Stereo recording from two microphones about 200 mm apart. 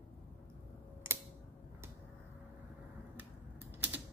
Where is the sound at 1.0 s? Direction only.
10° right (ahead or behind).